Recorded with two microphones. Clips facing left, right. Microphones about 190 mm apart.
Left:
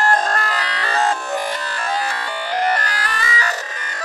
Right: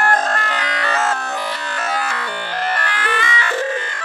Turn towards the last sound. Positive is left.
turn(degrees=40)  # may be behind; listen again after turning